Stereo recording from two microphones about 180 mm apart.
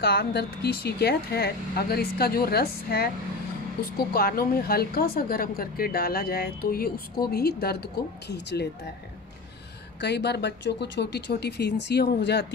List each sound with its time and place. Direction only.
0.0 s speech: 60° left (ahead or behind)
4.1 s speech: 55° left (ahead or behind)
9.9 s speech: 70° left (ahead or behind)